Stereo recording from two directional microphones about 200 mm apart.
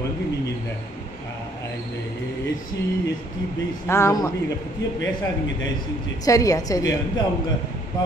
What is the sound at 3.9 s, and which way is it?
Speech, 15° left (ahead or behind).